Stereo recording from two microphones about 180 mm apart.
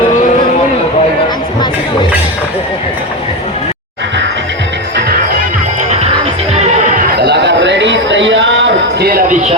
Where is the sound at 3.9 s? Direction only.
85° right; by 9.6 s 40° right (ahead or behind).